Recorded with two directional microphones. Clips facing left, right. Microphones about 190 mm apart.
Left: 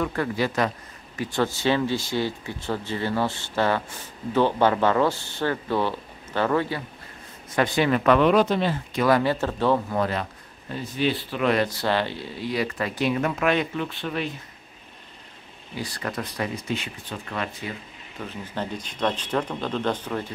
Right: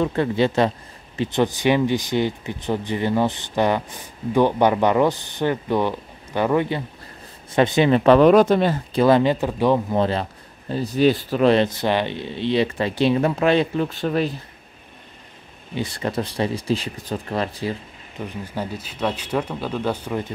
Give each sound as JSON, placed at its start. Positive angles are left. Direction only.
{"t": 0.0, "sound": "speech", "side_deg": -25}
{"t": 8.3, "sound": "speech", "side_deg": -45}
{"t": 8.9, "sound": "speech", "side_deg": -25}
{"t": 10.7, "sound": "speech", "side_deg": -35}
{"t": 11.5, "sound": "speech", "side_deg": -20}
{"t": 15.7, "sound": "speech", "side_deg": -25}
{"t": 18.2, "sound": "speech", "side_deg": -10}